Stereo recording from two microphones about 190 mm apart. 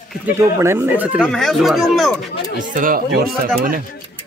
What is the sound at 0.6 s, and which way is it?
Speech, 15° right (ahead or behind).